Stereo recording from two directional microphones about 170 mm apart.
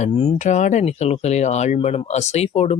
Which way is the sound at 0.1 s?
35° left (ahead or behind).